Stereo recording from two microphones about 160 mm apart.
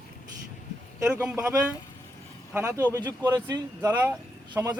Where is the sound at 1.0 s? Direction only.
5° right (ahead or behind).